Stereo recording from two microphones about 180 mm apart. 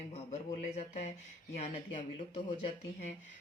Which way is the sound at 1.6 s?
30° left (ahead or behind).